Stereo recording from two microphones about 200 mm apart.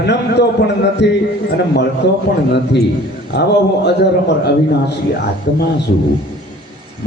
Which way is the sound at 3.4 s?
55° left (ahead or behind).